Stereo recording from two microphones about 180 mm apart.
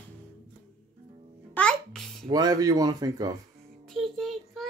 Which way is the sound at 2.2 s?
20° right (ahead or behind).